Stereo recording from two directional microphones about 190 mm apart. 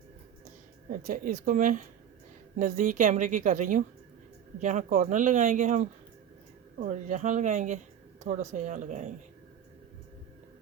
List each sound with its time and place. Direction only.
0.9 s a woman's voice: 50° right (ahead or behind)